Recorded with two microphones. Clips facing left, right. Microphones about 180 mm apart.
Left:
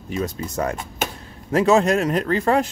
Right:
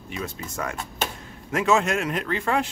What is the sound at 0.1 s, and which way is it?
Speech, 40° left (ahead or behind).